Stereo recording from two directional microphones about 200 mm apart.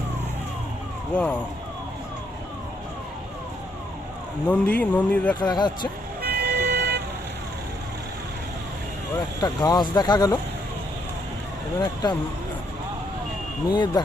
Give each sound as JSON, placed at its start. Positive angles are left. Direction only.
{"t": 1.1, "sound": "speech", "side_deg": 5}
{"t": 4.4, "sound": "speech", "side_deg": 5}
{"t": 5.4, "sound": "speech", "side_deg": 20}
{"t": 6.2, "sound": "vehicle", "side_deg": -55}
{"t": 9.4, "sound": "speech", "side_deg": 20}
{"t": 13.7, "sound": "speech", "side_deg": 20}